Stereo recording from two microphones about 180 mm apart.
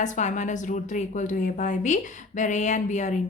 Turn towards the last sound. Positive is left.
turn(degrees=40)  # may be behind; listen again after turning